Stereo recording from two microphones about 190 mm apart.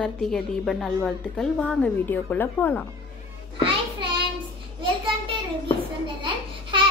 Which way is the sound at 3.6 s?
25° right (ahead or behind).